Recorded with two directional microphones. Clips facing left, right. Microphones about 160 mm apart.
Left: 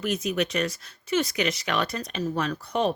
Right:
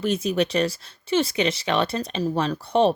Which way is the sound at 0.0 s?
30° right (ahead or behind).